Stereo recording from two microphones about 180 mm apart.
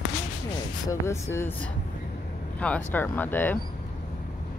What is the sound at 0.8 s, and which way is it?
Speech, 15° left (ahead or behind).